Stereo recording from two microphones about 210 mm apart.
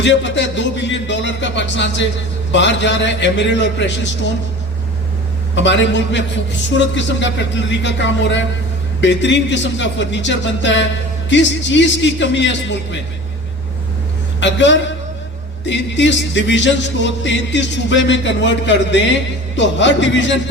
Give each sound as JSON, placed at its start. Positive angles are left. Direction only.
{"t": 0.0, "sound": "speech", "side_deg": 60}
{"t": 5.5, "sound": "speech", "side_deg": 60}
{"t": 14.4, "sound": "speech", "side_deg": 60}